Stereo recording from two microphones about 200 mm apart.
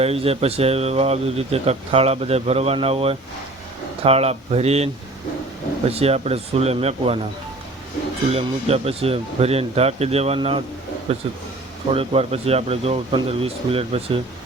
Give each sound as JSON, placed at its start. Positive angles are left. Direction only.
{"t": 0.0, "sound": "speech", "side_deg": -30}
{"t": 8.3, "sound": "speech", "side_deg": -30}